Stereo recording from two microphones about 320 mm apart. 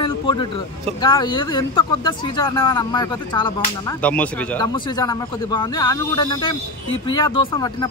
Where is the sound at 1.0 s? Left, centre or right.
Centre.